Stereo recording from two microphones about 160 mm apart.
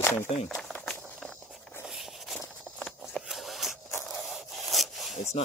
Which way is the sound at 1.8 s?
Centre (ahead or behind).